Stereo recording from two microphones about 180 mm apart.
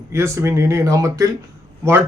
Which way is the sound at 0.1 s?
15° right (ahead or behind).